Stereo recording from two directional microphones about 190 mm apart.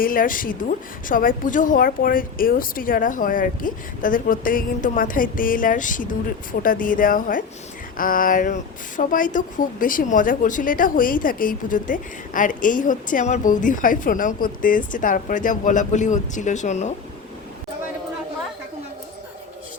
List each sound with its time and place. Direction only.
0.0 s speech: 45° left (ahead or behind)